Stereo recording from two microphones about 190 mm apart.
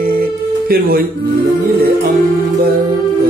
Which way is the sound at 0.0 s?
50° right (ahead or behind).